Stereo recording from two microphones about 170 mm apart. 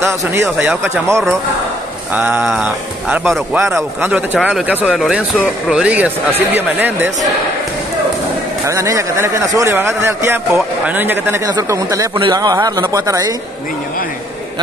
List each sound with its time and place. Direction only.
0.0 s speech: 15° right (ahead or behind)
8.6 s a man's voice: 20° right (ahead or behind)